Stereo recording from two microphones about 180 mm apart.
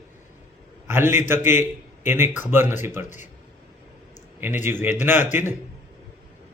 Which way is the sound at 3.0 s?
45° left (ahead or behind).